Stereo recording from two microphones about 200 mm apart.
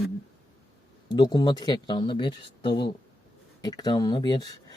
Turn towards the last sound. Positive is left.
turn(degrees=20)  # may be behind; listen again after turning